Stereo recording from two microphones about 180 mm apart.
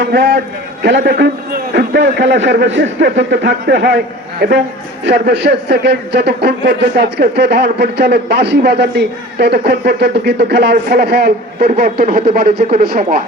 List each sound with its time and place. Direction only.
0.0 s a man's voice: 70° right (ahead or behind); by 13.2 s 50° right (ahead or behind)